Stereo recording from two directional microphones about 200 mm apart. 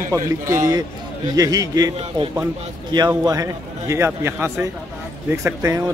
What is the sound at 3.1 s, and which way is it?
A man's voice, 15° right (ahead or behind).